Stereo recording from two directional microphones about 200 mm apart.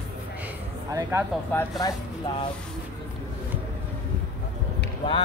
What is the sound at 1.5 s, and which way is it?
Speech, 10° left (ahead or behind).